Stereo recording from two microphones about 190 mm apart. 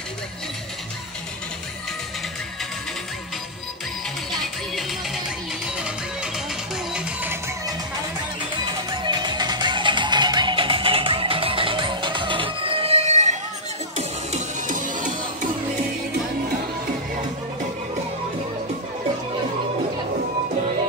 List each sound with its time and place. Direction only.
6.9 s music: 10° right (ahead or behind)
9.0 s music: 25° right (ahead or behind); by 15.1 s 40° right (ahead or behind)